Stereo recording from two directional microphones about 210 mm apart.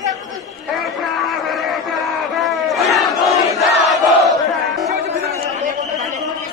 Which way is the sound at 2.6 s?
Centre (ahead or behind).